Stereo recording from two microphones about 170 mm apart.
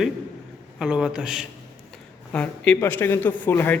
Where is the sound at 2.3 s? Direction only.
10° left (ahead or behind).